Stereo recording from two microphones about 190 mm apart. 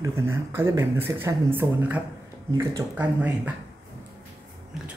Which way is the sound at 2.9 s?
10° right (ahead or behind).